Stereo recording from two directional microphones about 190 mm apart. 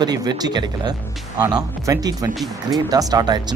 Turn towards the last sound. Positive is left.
turn(degrees=-20)  # may be behind; listen again after turning